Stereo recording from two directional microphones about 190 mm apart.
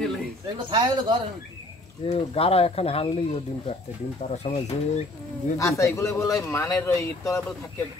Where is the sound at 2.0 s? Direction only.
30° left (ahead or behind).